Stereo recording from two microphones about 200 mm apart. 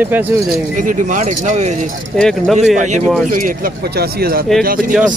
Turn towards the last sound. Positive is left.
turn(degrees=-5)  # may be behind; listen again after turning